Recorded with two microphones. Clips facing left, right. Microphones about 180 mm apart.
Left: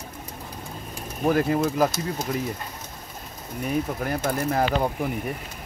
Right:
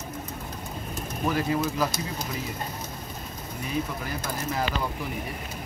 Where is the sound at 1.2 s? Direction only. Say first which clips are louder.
Left 5 dB; 50° left (ahead or behind).